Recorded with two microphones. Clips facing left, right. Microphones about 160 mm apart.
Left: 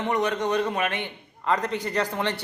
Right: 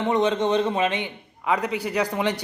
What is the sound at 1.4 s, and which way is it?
A man's voice, 10° right (ahead or behind).